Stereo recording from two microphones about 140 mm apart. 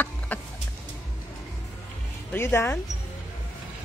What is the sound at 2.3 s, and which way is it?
Speech, 15° left (ahead or behind).